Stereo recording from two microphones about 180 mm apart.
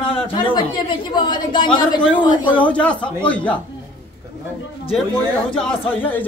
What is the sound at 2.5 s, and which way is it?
Speech, 5° left (ahead or behind).